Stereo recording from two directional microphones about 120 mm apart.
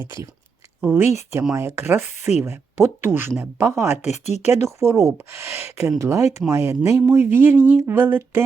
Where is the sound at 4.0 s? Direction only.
70° left (ahead or behind).